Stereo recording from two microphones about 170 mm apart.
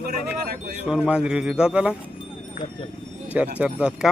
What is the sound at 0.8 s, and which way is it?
Speech, 5° right (ahead or behind).